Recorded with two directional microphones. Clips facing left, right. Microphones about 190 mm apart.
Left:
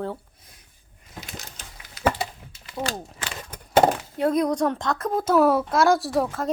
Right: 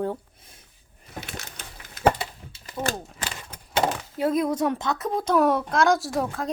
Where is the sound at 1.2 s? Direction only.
60° right (ahead or behind).